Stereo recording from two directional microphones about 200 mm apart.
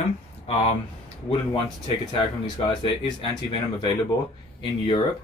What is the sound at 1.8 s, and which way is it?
Speech, 25° left (ahead or behind).